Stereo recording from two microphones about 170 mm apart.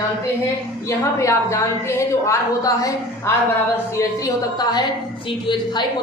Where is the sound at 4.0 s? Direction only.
20° left (ahead or behind).